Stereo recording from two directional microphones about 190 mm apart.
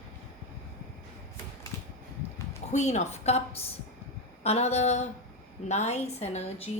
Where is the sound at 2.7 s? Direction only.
40° left (ahead or behind).